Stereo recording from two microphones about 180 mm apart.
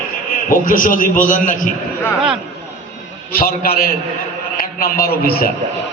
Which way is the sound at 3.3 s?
55° left (ahead or behind).